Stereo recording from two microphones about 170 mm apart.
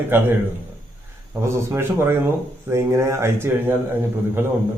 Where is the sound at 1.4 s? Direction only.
15° right (ahead or behind).